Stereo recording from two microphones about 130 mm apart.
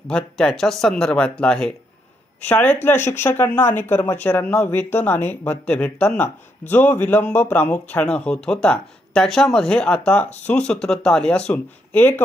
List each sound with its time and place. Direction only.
0.1 s speech: 5° left (ahead or behind)